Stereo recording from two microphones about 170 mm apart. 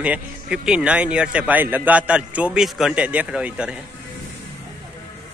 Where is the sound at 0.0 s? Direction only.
5° right (ahead or behind).